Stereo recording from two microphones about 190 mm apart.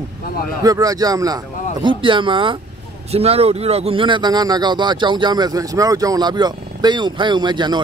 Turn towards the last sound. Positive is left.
turn(degrees=-25)  # may be behind; listen again after turning